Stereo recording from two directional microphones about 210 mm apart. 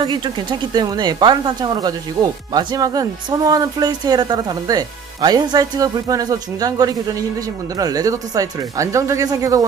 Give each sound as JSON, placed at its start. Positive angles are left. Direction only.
{"t": 0.0, "sound": "speech", "side_deg": -20}